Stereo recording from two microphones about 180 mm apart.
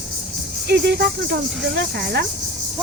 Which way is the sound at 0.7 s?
70° right (ahead or behind).